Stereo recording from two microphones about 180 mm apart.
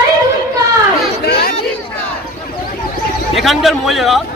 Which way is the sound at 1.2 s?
65° left (ahead or behind).